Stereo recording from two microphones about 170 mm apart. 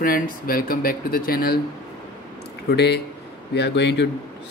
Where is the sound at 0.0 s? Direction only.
60° left (ahead or behind).